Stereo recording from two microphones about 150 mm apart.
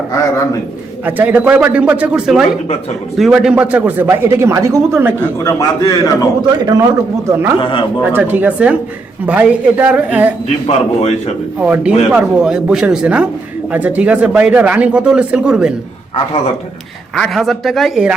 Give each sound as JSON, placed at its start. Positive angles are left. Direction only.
{"t": 1.0, "sound": "speech", "side_deg": -10}
{"t": 5.4, "sound": "a man's voice", "side_deg": 25}
{"t": 6.4, "sound": "a man's voice", "side_deg": -25}
{"t": 7.6, "sound": "a man's voice", "side_deg": 35}
{"t": 8.1, "sound": "speech", "side_deg": -10}
{"t": 10.7, "sound": "a man's voice", "side_deg": 45}
{"t": 11.6, "sound": "speech", "side_deg": -10}
{"t": 17.2, "sound": "speech", "side_deg": 0}